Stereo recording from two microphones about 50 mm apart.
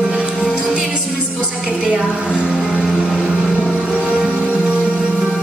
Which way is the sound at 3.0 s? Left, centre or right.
Centre.